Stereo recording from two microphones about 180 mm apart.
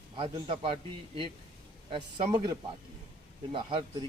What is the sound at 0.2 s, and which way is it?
Speech, 30° right (ahead or behind).